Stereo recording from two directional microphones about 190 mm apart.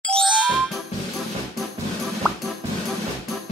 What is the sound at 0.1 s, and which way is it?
Ding, centre (ahead or behind).